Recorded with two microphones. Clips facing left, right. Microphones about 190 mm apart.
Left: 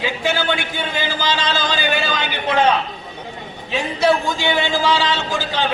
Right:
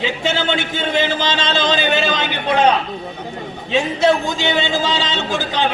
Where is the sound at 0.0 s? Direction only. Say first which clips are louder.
Right 1 dB; 25° right (ahead or behind).